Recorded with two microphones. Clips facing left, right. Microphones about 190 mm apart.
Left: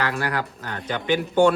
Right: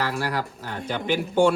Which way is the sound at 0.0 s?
5° right (ahead or behind).